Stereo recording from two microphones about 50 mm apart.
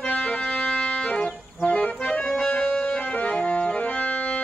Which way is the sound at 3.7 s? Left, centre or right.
Left.